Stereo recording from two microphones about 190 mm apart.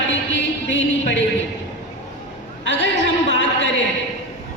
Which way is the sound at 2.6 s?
70° left (ahead or behind).